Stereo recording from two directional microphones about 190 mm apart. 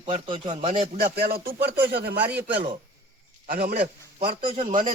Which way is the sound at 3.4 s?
55° right (ahead or behind).